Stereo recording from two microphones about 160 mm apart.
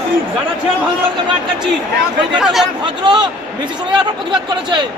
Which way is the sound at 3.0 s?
30° right (ahead or behind).